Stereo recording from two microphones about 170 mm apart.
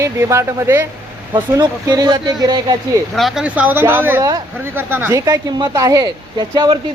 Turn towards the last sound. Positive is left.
turn(degrees=-25)  # may be behind; listen again after turning